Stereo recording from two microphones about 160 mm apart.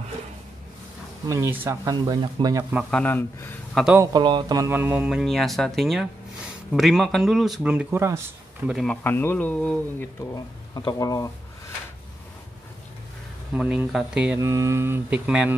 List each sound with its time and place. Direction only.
1.2 s speech: 20° right (ahead or behind)
2.9 s speech: 10° left (ahead or behind)
3.7 s speech: 5° right (ahead or behind)
4.0 s speech: 25° right (ahead or behind)
4.7 s speech: 10° right (ahead or behind)
8.6 s speech: centre (ahead or behind)
9.0 s speech: 15° left (ahead or behind)
10.7 s speech: 25° left (ahead or behind)
13.6 s mantra: 5° right (ahead or behind)
14.4 s mantra: 20° right (ahead or behind)